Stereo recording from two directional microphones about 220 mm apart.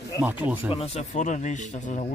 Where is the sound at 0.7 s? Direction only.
30° left (ahead or behind).